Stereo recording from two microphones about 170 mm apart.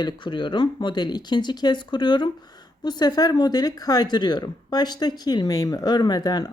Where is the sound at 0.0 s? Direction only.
25° left (ahead or behind).